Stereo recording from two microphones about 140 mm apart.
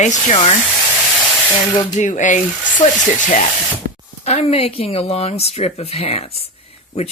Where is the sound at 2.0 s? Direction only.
60° left (ahead or behind).